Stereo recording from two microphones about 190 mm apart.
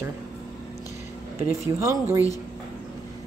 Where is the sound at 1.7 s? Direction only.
15° right (ahead or behind).